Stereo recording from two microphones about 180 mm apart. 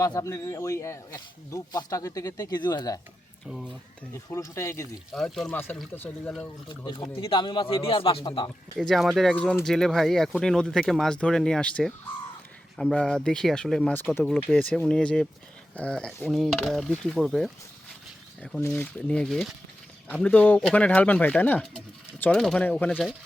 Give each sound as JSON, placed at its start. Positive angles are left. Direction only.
{"t": 0.0, "sound": "speech", "side_deg": 20}
{"t": 3.5, "sound": "speech", "side_deg": 0}
{"t": 4.1, "sound": "speech", "side_deg": 15}
{"t": 5.1, "sound": "speech", "side_deg": 0}
{"t": 6.7, "sound": "speech", "side_deg": 25}
{"t": 8.8, "sound": "speech", "side_deg": 0}
{"t": 18.6, "sound": "speech", "side_deg": 10}